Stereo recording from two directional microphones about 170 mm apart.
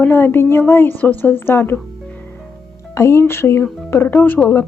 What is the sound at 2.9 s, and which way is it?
Speech, 15° left (ahead or behind).